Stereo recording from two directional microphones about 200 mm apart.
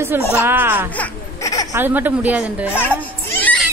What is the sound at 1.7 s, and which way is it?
A woman's voice, 10° right (ahead or behind).